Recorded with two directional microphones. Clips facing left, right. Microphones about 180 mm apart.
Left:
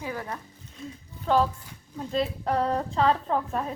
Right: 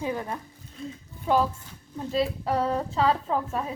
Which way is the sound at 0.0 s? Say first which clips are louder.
Right 4 dB; 20° right (ahead or behind).